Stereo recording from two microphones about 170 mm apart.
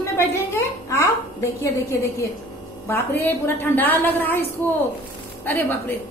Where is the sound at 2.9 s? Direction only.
10° left (ahead or behind).